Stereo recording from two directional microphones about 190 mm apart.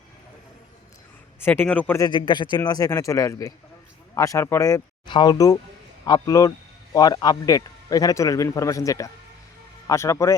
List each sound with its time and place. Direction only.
1.5 s a man's voice: 10° left (ahead or behind)
2.0 s a man's voice: 25° left (ahead or behind)